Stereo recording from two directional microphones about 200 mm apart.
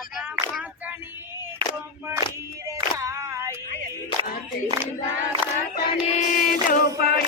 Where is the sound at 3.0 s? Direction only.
15° right (ahead or behind).